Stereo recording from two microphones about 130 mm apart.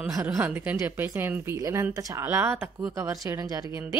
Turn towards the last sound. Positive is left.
turn(degrees=-25)  # may be behind; listen again after turning